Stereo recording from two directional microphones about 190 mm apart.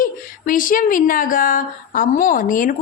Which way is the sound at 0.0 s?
45° left (ahead or behind).